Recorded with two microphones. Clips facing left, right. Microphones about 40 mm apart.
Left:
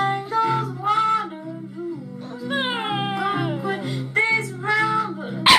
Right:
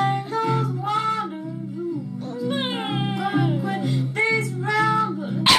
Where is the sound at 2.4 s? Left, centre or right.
Centre.